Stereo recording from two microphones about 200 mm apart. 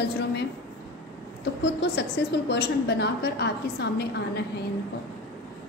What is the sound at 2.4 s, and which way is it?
A woman's voice, 55° left (ahead or behind).